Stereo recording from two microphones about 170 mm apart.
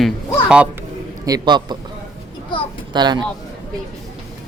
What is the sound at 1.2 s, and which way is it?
Speech, 25° right (ahead or behind).